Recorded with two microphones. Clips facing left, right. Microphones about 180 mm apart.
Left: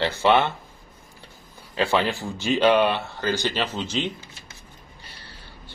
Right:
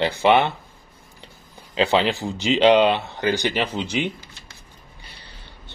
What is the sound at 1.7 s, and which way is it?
Speech, 20° right (ahead or behind).